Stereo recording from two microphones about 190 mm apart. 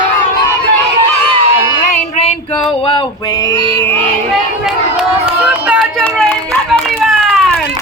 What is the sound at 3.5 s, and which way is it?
Music, 25° right (ahead or behind).